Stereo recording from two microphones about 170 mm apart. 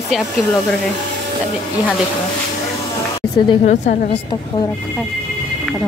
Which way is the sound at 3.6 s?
50° left (ahead or behind).